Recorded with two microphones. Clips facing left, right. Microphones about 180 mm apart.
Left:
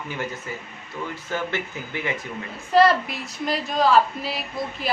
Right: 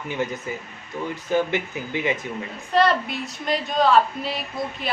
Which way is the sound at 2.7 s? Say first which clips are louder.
Left 2 dB; centre (ahead or behind).